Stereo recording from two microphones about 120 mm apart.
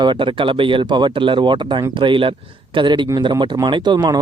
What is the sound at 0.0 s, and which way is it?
Speech, 40° right (ahead or behind).